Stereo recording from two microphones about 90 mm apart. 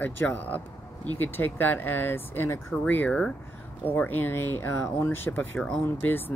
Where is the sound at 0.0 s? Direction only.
20° left (ahead or behind).